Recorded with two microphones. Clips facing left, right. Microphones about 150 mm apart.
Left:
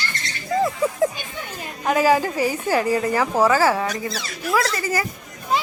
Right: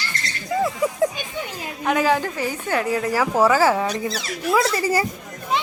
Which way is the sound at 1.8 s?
5° left (ahead or behind).